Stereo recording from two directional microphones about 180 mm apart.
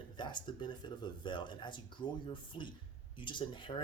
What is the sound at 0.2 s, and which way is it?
Speech, 25° left (ahead or behind).